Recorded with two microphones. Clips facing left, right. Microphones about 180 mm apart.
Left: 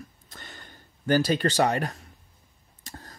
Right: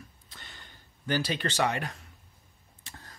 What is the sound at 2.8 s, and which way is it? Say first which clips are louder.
Tick: left 6 dB; 40° left (ahead or behind).